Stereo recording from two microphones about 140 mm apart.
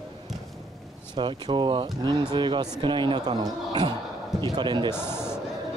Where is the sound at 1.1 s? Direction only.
35° right (ahead or behind).